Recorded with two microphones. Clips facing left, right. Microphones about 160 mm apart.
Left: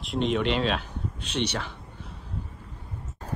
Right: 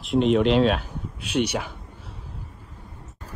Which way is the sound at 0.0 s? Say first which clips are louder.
Right 6 dB; centre (ahead or behind).